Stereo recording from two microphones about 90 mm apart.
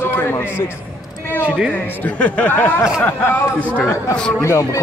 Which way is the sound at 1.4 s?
10° right (ahead or behind).